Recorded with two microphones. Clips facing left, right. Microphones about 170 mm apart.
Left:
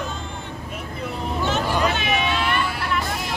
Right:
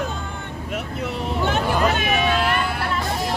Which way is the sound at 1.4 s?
50° right (ahead or behind).